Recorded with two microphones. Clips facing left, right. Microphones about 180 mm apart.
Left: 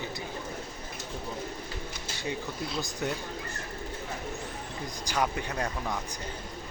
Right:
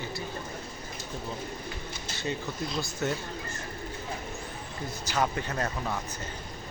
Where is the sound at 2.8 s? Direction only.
15° left (ahead or behind).